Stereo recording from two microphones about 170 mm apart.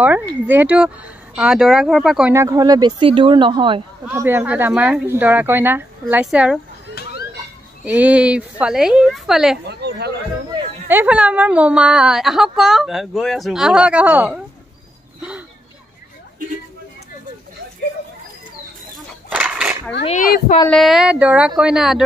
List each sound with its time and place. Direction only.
0.0 s a woman's voice: 10° right (ahead or behind)
2.3 s speech: 20° right (ahead or behind)
4.0 s speech: 15° right (ahead or behind)
7.0 s a sound: 70° left (ahead or behind)
7.8 s a woman's voice: 10° right (ahead or behind)
9.7 s speech: 75° right (ahead or behind)
10.9 s a woman's voice: 10° right (ahead or behind)
19.3 s a sound: 5° right (ahead or behind)
20.2 s speech: 65° left (ahead or behind)
20.7 s a woman's voice: centre (ahead or behind)